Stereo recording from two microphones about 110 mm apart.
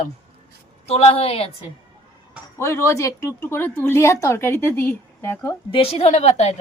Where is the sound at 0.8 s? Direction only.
65° left (ahead or behind).